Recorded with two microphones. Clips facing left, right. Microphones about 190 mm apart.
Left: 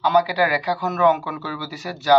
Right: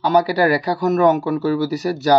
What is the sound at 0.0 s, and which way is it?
Speech, 40° right (ahead or behind).